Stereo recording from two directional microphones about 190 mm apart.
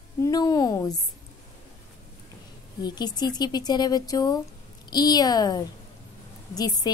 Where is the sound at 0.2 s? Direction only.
20° left (ahead or behind).